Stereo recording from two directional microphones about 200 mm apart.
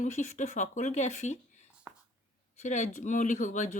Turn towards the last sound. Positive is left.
turn(degrees=40)  # may be behind; listen again after turning